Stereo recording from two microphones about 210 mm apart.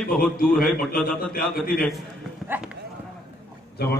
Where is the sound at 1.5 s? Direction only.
45° left (ahead or behind).